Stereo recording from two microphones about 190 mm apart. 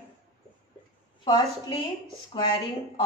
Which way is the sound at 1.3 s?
20° left (ahead or behind).